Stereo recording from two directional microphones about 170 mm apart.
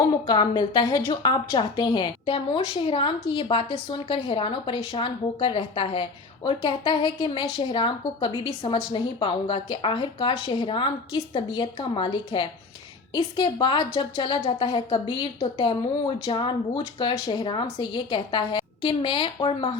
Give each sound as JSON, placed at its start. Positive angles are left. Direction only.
{"t": 0.3, "sound": "a woman's voice", "side_deg": 25}